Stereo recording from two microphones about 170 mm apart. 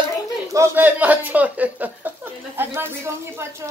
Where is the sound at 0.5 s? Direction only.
15° right (ahead or behind).